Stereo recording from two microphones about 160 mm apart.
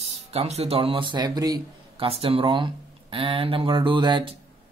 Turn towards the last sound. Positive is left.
turn(degrees=-30)  # may be behind; listen again after turning